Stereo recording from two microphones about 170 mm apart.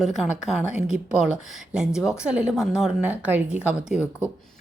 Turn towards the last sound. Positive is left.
turn(degrees=-5)  # may be behind; listen again after turning